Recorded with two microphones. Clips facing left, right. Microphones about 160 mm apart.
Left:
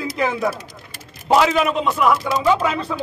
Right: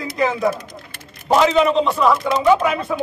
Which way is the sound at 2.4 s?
15° right (ahead or behind).